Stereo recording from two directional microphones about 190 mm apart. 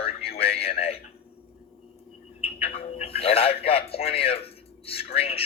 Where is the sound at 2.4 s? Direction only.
30° left (ahead or behind).